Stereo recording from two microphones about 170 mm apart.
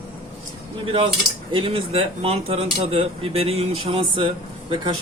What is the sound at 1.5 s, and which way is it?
Speech, 30° right (ahead or behind).